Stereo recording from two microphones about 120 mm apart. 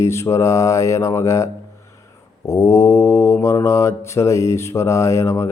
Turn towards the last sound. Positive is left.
turn(degrees=25)  # may be behind; listen again after turning